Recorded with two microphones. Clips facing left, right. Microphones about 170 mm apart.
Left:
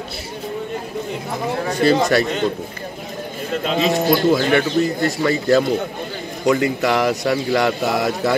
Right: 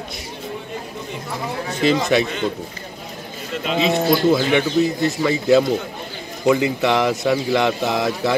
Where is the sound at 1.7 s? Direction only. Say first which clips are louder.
Left 3 dB; 40° left (ahead or behind).